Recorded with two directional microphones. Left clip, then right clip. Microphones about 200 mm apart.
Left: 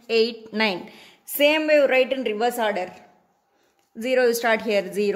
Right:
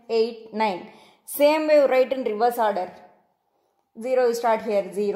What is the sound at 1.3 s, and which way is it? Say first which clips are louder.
A woman's voice: even; 5° left (ahead or behind).